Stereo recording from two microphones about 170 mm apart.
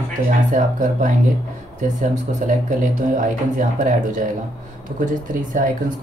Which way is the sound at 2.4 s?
50° right (ahead or behind).